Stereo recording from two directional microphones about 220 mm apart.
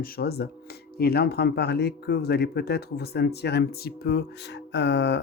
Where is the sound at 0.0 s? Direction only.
45° left (ahead or behind).